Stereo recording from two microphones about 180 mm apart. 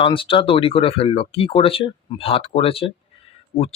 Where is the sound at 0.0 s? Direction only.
30° left (ahead or behind).